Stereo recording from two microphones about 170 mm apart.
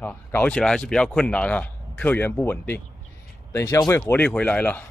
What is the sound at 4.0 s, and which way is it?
Speech, 10° left (ahead or behind).